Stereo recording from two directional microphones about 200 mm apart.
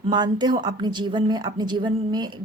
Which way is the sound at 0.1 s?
20° right (ahead or behind).